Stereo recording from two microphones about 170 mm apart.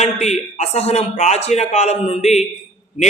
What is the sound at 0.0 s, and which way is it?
A man's voice, 40° left (ahead or behind).